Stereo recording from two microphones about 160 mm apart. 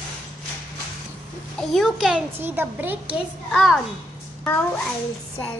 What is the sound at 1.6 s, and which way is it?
A child's voice, centre (ahead or behind).